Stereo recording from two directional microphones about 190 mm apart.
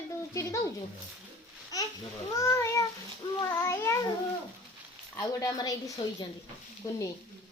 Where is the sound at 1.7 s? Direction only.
20° left (ahead or behind).